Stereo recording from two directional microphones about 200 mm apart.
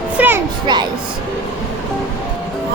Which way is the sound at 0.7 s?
20° right (ahead or behind).